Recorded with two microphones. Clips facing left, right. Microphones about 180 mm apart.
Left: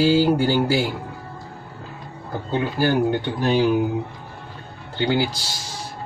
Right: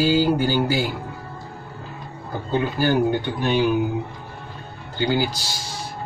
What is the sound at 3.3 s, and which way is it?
Speech, 35° left (ahead or behind).